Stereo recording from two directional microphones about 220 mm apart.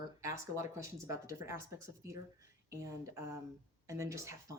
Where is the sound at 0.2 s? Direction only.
15° right (ahead or behind).